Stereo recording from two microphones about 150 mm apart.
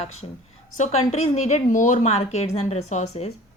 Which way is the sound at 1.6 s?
60° left (ahead or behind).